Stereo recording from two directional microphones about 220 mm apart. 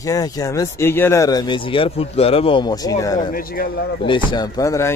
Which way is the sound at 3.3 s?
40° left (ahead or behind).